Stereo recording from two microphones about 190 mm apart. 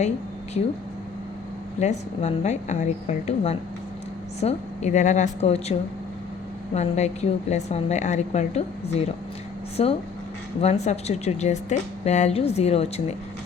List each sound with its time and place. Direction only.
1.8 s a woman's voice: 35° left (ahead or behind)
6.7 s a woman's voice: 35° left (ahead or behind)